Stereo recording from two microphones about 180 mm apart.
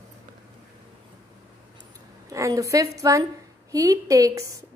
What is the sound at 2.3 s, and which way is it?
A woman's voice, 20° right (ahead or behind).